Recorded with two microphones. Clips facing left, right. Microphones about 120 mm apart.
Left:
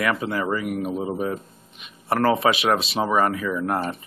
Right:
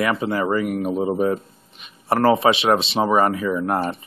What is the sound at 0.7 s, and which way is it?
Speech, 45° right (ahead or behind).